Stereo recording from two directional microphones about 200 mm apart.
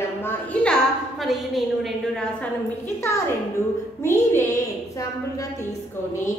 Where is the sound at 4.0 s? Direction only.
15° left (ahead or behind).